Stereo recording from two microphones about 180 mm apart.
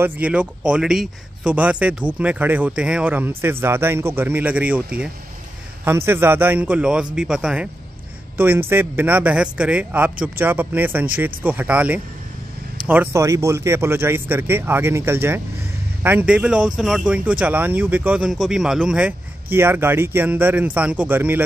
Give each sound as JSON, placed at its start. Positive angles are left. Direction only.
{"t": 0.0, "sound": "speech", "side_deg": -5}
{"t": 5.9, "sound": "speech", "side_deg": -15}